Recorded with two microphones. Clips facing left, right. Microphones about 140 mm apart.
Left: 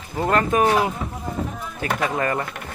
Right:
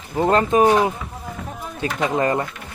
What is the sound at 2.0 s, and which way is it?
Speech, 25° right (ahead or behind).